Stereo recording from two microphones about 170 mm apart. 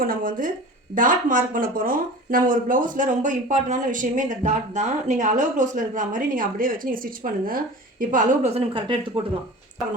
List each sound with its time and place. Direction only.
0.0 s speech: 55° right (ahead or behind)
8.5 s speech: 30° right (ahead or behind)